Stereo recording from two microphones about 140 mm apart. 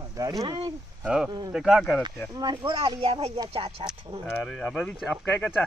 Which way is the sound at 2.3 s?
30° right (ahead or behind).